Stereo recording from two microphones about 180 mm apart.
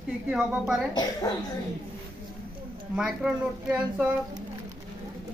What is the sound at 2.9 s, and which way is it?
A woman's voice, 5° right (ahead or behind).